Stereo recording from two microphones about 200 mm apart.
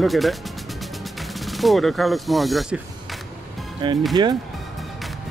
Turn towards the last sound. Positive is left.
turn(degrees=-20)  # may be behind; listen again after turning